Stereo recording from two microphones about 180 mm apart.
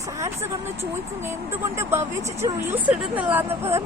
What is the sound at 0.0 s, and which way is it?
Speech, 15° right (ahead or behind).